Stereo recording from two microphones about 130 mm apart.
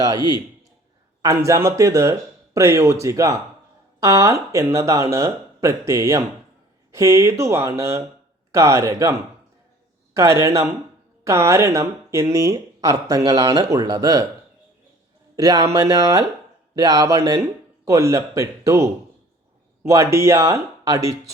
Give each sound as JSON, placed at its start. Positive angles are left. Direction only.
{"t": 1.2, "sound": "speech", "side_deg": -25}
{"t": 10.2, "sound": "speech", "side_deg": -25}
{"t": 15.4, "sound": "speech", "side_deg": -30}